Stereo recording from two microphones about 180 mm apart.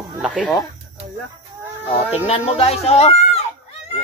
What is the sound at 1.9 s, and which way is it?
Speech, 35° left (ahead or behind).